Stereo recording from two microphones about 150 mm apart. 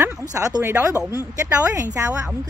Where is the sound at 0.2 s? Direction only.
25° right (ahead or behind).